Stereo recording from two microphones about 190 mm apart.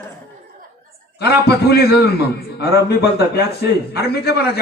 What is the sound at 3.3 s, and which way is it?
Speech, 55° left (ahead or behind).